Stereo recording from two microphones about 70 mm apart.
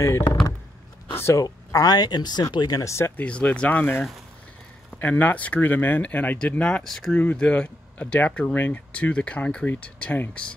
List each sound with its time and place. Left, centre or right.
0.0 s speech: left
1.1 s a sound: left
1.4 s speech: left
2.8 s speech: left
3.2 s speech: centre
6.5 s speech: centre
7.2 s speech: centre